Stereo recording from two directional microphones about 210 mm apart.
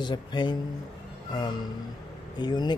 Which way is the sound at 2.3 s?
20° left (ahead or behind).